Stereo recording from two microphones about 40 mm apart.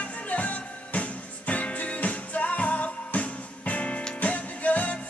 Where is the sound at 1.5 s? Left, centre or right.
Left.